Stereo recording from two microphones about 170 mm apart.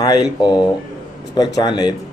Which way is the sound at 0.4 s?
25° left (ahead or behind).